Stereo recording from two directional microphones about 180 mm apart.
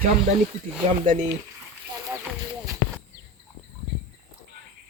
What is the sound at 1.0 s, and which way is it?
Speech, 45° right (ahead or behind).